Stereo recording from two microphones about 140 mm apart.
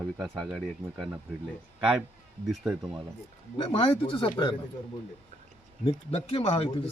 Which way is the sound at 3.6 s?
40° left (ahead or behind).